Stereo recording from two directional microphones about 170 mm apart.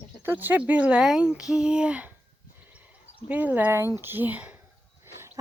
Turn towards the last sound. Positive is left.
turn(degrees=-10)  # may be behind; listen again after turning